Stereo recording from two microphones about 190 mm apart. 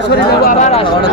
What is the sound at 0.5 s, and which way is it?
Speech, 35° left (ahead or behind).